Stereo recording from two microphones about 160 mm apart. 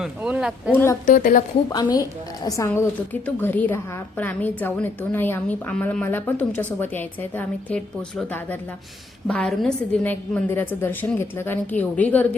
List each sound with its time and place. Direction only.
0.0 s speech: 5° right (ahead or behind)
1.0 s a woman's voice: 60° left (ahead or behind)
1.7 s a woman's voice: 25° left (ahead or behind); by 12.4 s 10° left (ahead or behind)